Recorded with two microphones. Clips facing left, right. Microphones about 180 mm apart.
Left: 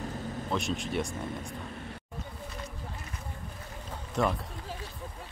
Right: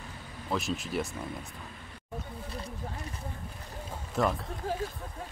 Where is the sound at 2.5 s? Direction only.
30° right (ahead or behind).